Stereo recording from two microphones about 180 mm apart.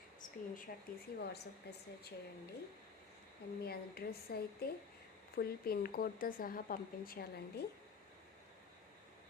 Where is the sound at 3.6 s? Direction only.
60° left (ahead or behind).